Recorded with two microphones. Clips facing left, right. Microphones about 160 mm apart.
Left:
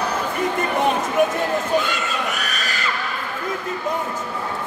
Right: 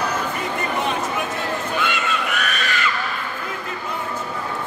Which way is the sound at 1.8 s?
40° left (ahead or behind).